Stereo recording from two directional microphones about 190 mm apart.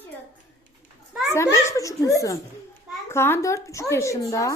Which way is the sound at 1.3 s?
15° left (ahead or behind).